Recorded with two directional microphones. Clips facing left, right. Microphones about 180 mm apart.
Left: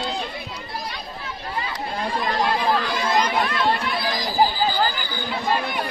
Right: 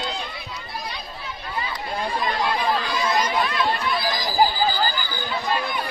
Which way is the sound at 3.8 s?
65° left (ahead or behind).